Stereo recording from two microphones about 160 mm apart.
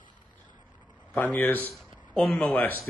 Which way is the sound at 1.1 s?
10° left (ahead or behind).